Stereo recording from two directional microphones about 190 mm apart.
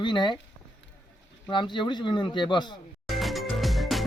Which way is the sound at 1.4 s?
25° left (ahead or behind).